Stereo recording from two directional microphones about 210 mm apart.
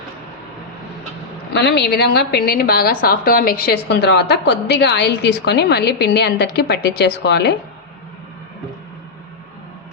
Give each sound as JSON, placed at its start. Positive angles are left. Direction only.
{"t": 1.5, "sound": "a woman's voice", "side_deg": 55}